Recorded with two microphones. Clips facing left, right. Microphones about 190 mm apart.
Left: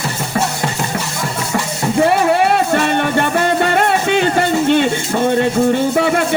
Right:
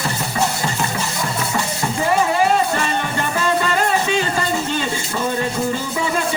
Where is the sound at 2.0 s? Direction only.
65° left (ahead or behind).